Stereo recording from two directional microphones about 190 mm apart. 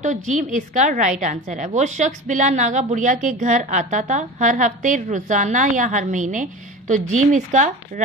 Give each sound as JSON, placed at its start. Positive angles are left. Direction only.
{"t": 0.0, "sound": "a woman's voice", "side_deg": -40}